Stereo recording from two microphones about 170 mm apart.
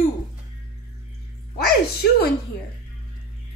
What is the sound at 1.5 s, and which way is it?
Speech, 70° left (ahead or behind).